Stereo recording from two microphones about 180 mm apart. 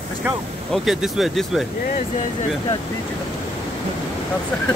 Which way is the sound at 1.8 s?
45° left (ahead or behind).